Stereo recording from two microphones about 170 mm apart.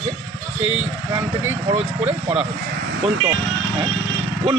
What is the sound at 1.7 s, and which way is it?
Speech, 35° right (ahead or behind).